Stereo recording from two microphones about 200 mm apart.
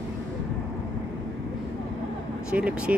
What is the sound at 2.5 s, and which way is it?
Speech, 5° right (ahead or behind).